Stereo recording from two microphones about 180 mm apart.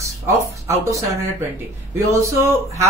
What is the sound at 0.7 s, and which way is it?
Speech, 15° right (ahead or behind).